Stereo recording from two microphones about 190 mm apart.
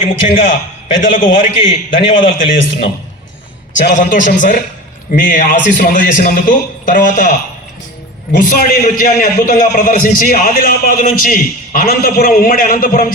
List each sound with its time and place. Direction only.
0.0 s a man's voice: 45° left (ahead or behind)
3.8 s a man's voice: 45° left (ahead or behind)
8.4 s a man's voice: 50° left (ahead or behind)